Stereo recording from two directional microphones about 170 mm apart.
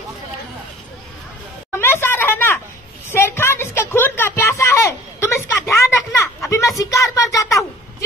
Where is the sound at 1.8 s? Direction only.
15° left (ahead or behind).